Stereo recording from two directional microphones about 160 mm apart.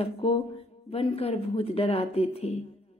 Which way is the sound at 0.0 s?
40° left (ahead or behind).